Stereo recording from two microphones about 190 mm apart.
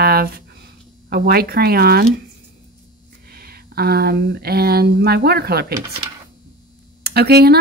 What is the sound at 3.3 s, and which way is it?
Speech, 55° right (ahead or behind).